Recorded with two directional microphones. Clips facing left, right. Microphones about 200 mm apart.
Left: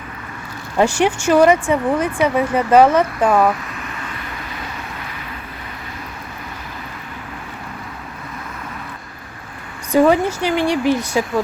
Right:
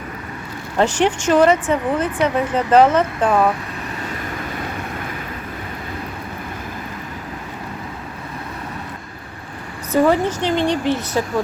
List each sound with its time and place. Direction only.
0.8 s speech: 10° left (ahead or behind)
9.9 s speech: 10° left (ahead or behind)